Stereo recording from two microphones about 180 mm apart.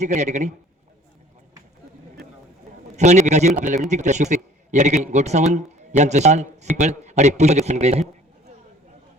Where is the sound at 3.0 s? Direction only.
40° right (ahead or behind).